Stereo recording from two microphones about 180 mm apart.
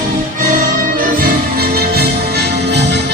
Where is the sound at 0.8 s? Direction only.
50° right (ahead or behind).